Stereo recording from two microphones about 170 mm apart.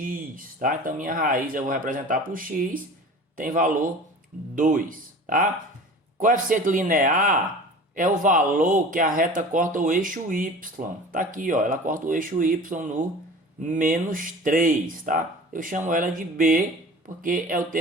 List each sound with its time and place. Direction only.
0.0 s speech: 55° right (ahead or behind)